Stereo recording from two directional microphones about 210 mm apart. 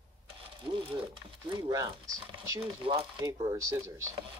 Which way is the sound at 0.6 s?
25° right (ahead or behind).